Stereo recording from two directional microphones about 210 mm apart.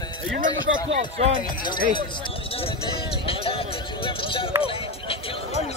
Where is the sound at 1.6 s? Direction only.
20° left (ahead or behind).